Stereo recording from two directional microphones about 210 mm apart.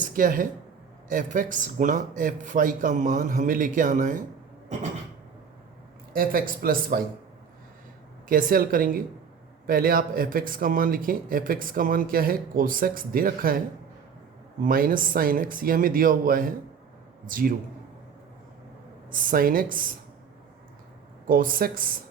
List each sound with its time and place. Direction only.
0.0 s speech: 40° right (ahead or behind)
6.1 s speech: 45° right (ahead or behind)
8.3 s speech: 40° right (ahead or behind)
14.6 s speech: 40° right (ahead or behind)
19.3 s speech: 40° right (ahead or behind)
21.2 s speech: 40° right (ahead or behind)